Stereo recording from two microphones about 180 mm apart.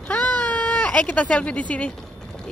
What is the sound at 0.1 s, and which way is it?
Baby cry, 5° left (ahead or behind).